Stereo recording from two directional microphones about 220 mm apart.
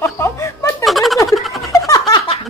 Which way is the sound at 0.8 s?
Centre (ahead or behind).